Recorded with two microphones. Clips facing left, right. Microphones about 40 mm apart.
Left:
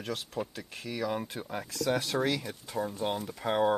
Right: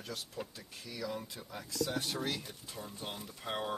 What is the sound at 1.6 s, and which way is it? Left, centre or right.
Speech, left.